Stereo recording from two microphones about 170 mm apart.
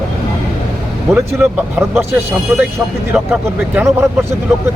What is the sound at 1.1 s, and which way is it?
Speech, 15° right (ahead or behind).